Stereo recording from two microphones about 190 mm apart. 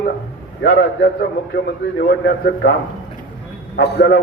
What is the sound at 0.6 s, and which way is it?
A man's voice, 65° left (ahead or behind).